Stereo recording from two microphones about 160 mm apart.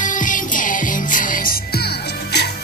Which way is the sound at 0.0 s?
55° left (ahead or behind).